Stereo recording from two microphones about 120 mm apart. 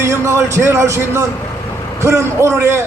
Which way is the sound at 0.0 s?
20° right (ahead or behind).